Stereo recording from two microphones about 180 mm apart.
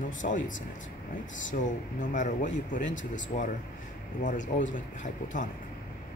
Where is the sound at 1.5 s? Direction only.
45° left (ahead or behind).